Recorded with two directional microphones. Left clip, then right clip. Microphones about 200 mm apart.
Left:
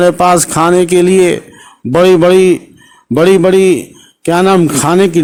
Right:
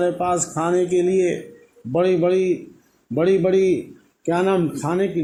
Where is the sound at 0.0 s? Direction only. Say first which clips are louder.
Left 13 dB; 40° left (ahead or behind).